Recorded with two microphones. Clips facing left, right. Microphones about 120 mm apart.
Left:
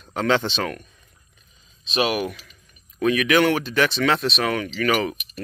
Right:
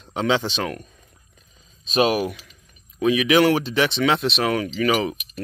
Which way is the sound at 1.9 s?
35° right (ahead or behind).